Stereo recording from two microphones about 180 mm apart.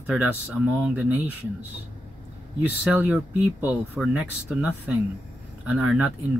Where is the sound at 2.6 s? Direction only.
10° right (ahead or behind).